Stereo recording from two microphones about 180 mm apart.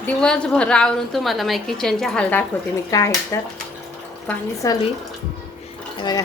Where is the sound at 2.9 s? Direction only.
20° left (ahead or behind).